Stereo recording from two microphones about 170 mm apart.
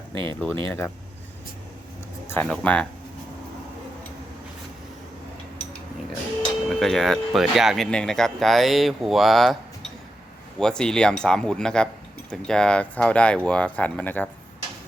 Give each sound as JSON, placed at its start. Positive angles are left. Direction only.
{"t": 0.1, "sound": "speech", "side_deg": -30}
{"t": 0.3, "sound": "speech", "side_deg": 10}
{"t": 2.2, "sound": "speech", "side_deg": 10}
{"t": 6.7, "sound": "speech", "side_deg": 0}
{"t": 10.6, "sound": "speech", "side_deg": 5}